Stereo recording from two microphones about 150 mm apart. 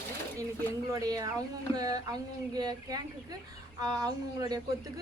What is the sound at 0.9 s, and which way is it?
Speech, 25° right (ahead or behind).